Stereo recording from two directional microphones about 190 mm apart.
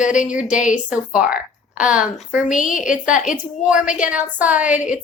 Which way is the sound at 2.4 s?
40° left (ahead or behind).